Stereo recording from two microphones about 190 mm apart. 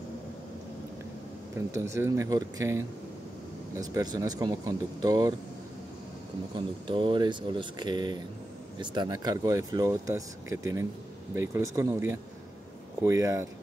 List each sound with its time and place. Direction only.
1.7 s speech: 15° right (ahead or behind)
6.5 s speech: 25° right (ahead or behind)